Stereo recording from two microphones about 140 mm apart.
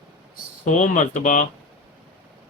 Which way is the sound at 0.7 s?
65° left (ahead or behind).